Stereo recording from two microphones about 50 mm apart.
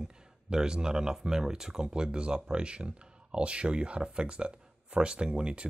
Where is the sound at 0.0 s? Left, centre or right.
Centre.